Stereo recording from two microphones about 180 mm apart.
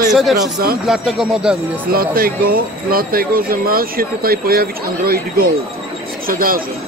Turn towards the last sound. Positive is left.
turn(degrees=-55)  # may be behind; listen again after turning